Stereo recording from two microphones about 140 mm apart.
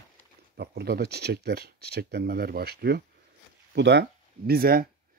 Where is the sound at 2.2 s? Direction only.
90° right.